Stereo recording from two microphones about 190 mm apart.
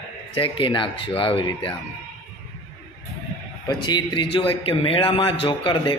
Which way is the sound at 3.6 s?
25° left (ahead or behind).